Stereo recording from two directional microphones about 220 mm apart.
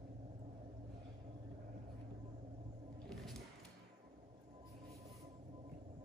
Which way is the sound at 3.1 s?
Centre (ahead or behind).